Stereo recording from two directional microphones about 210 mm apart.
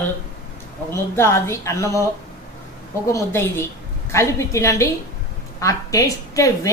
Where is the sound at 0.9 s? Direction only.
10° left (ahead or behind).